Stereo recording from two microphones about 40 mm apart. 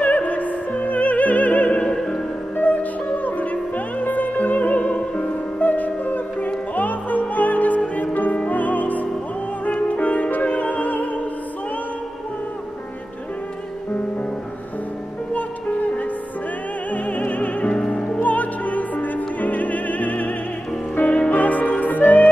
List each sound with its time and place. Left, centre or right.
0.0 s music: left
1.7 s opera: left
2.5 s music: left
5.6 s music: left
16.9 s music: left
17.7 s music: left
18.2 s opera: left
20.9 s music: left